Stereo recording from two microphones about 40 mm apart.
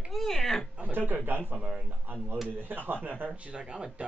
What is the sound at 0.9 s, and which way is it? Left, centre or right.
Speech, right.